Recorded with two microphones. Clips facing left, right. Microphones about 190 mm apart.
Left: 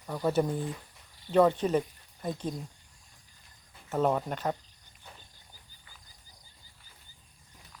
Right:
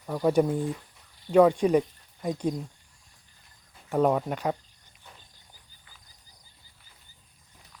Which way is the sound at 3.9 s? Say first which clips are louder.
Right 4 dB; 10° right (ahead or behind).